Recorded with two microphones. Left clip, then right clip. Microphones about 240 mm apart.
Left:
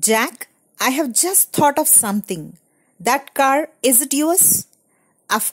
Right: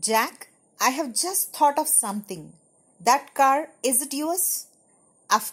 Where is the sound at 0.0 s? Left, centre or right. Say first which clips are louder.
Left 5 dB; left.